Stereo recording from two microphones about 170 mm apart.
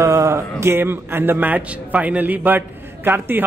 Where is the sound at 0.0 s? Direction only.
15° right (ahead or behind).